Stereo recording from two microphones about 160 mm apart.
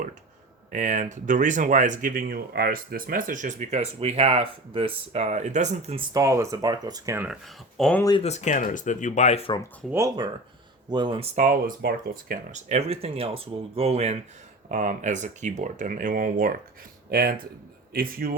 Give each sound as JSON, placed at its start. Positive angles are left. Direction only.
{"t": 0.7, "sound": "speech", "side_deg": -55}
{"t": 6.1, "sound": "speech", "side_deg": -20}
{"t": 7.3, "sound": "speech", "side_deg": 0}
{"t": 8.2, "sound": "speech", "side_deg": 45}
{"t": 9.8, "sound": "speech", "side_deg": -5}
{"t": 10.8, "sound": "speech", "side_deg": -30}
{"t": 11.3, "sound": "speech", "side_deg": -55}
{"t": 12.5, "sound": "speech", "side_deg": -45}
{"t": 14.7, "sound": "speech", "side_deg": -50}